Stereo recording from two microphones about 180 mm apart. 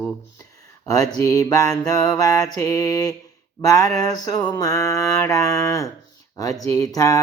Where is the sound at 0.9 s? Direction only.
20° left (ahead or behind).